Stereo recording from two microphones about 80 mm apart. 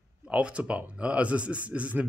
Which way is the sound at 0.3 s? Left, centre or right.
Centre.